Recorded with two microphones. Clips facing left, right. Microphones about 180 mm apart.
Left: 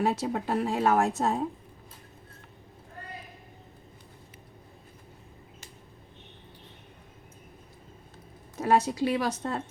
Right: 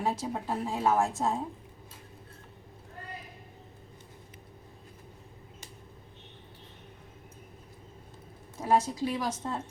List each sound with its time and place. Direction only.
0.0 s a woman's voice: 70° left (ahead or behind)
8.6 s a woman's voice: 70° left (ahead or behind)